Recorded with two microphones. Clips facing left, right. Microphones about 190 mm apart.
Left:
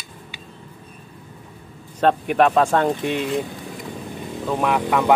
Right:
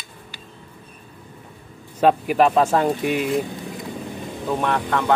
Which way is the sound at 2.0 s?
5° right (ahead or behind).